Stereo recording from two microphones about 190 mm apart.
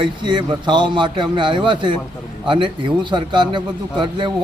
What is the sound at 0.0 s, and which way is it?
Speech, 25° right (ahead or behind).